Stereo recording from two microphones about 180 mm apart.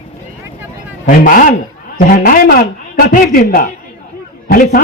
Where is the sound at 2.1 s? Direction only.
50° left (ahead or behind).